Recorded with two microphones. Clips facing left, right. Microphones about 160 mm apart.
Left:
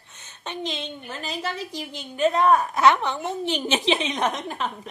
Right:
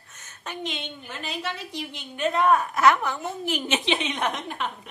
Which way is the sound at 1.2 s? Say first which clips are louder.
Left 2 dB; 40° left (ahead or behind).